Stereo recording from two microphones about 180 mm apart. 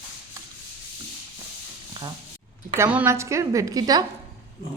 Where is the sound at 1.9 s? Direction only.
20° right (ahead or behind).